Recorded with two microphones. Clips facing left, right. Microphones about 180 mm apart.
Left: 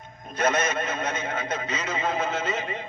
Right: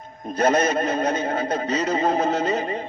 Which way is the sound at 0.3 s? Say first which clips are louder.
Right 5 dB; 35° right (ahead or behind).